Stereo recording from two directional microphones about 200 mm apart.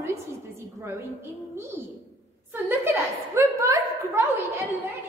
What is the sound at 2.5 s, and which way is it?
A woman's voice, 10° right (ahead or behind).